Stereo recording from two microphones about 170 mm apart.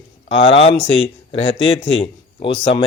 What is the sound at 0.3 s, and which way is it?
Speech, 35° left (ahead or behind).